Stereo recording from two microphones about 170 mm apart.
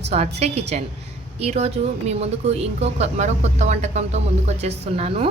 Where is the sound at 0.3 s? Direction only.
40° right (ahead or behind).